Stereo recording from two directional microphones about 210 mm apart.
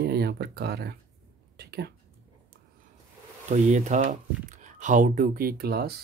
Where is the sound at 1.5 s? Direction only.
50° right (ahead or behind).